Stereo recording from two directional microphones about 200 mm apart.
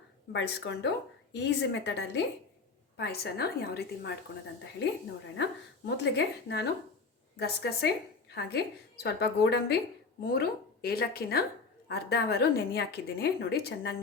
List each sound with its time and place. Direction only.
0.3 s a woman's voice: 60° left (ahead or behind)
5.4 s a woman's voice: 60° left (ahead or behind)